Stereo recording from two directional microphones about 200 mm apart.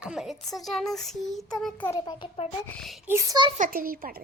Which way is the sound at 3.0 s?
15° right (ahead or behind).